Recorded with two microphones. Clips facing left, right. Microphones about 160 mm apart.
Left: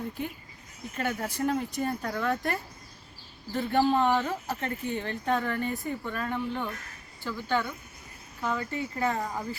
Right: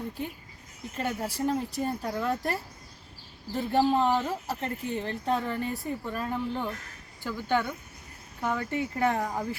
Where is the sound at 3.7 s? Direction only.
Centre (ahead or behind).